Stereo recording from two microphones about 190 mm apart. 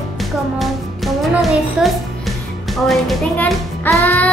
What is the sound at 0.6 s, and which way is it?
Music, centre (ahead or behind).